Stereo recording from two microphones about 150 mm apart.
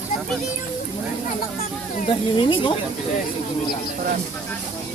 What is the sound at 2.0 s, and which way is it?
Speech, 30° left (ahead or behind).